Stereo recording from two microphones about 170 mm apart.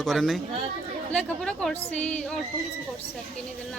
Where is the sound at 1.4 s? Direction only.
5° left (ahead or behind).